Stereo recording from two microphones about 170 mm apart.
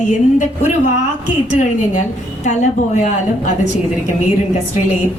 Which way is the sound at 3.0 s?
45° left (ahead or behind).